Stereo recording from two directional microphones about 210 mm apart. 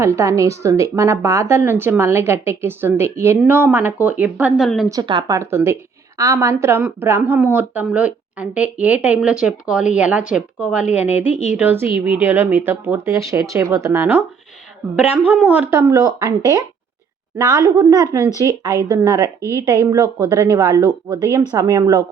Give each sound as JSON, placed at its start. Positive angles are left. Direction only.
{"t": 0.0, "sound": "a woman's voice", "side_deg": -15}
{"t": 4.9, "sound": "a woman's voice", "side_deg": -20}
{"t": 15.3, "sound": "a woman's voice", "side_deg": -5}